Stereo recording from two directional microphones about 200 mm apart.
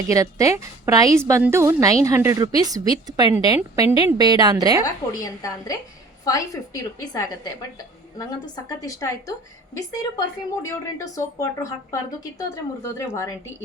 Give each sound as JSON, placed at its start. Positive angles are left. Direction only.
{"t": 0.1, "sound": "a woman's voice", "side_deg": -15}
{"t": 5.1, "sound": "a woman's voice", "side_deg": 15}